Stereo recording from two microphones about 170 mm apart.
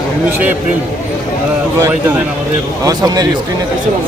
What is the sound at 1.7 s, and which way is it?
Speech, 15° right (ahead or behind).